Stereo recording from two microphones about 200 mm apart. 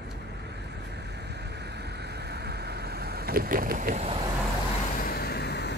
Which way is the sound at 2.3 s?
55° right (ahead or behind).